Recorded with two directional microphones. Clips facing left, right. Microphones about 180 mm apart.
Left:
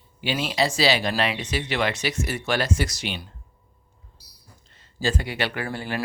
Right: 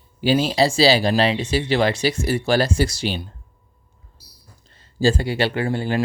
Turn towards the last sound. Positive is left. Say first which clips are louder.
# right 7 dB
turn(degrees=-30)  # may be behind; listen again after turning